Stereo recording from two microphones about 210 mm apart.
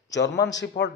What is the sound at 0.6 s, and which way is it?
Speech, 55° left (ahead or behind).